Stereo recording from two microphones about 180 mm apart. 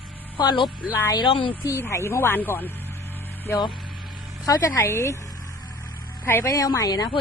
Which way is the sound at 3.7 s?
Centre (ahead or behind).